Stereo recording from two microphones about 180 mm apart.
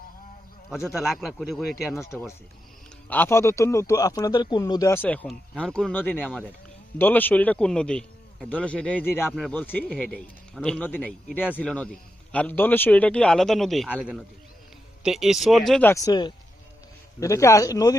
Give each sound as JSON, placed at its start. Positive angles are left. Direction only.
{"t": 0.7, "sound": "a man's voice", "side_deg": 0}
{"t": 3.1, "sound": "a man's voice", "side_deg": 10}
{"t": 15.9, "sound": "speech", "side_deg": 20}